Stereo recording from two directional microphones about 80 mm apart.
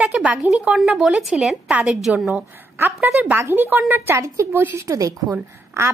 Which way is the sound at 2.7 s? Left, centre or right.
Right.